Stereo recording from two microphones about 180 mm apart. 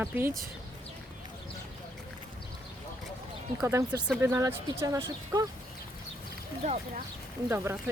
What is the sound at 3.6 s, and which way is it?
Speech, 15° right (ahead or behind).